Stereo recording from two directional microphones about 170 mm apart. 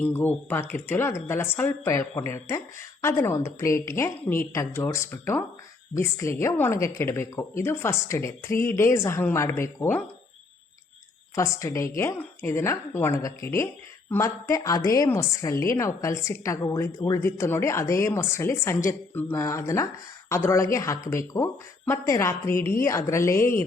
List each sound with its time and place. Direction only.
0.0 s a woman's voice: 10° left (ahead or behind)
11.3 s a woman's voice: 20° left (ahead or behind)